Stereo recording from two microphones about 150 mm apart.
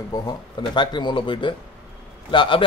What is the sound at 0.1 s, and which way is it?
Speech, 30° left (ahead or behind).